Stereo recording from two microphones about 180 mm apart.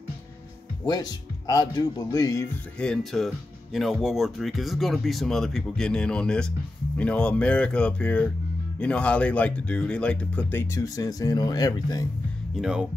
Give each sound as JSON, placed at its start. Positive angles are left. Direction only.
{"t": 0.8, "sound": "speech", "side_deg": 20}
{"t": 2.8, "sound": "speech", "side_deg": 0}
{"t": 12.5, "sound": "speech", "side_deg": -5}